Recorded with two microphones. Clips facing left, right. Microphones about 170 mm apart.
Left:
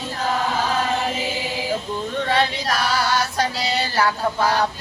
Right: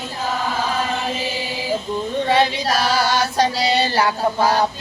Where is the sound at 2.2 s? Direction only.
15° right (ahead or behind).